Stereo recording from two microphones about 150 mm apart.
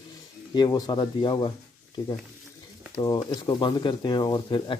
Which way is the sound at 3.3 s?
30° left (ahead or behind).